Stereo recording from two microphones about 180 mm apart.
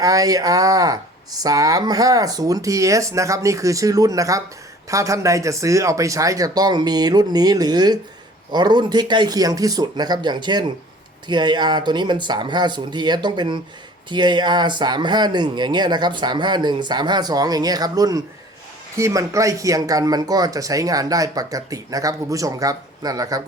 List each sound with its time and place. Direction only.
0.0 s speech: 20° right (ahead or behind)